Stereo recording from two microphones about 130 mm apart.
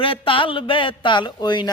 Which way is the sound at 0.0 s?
40° left (ahead or behind).